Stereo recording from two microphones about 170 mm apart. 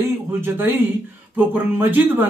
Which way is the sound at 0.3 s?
10° right (ahead or behind).